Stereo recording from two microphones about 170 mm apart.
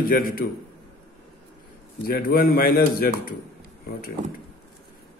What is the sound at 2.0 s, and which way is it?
A man's voice, 60° left (ahead or behind).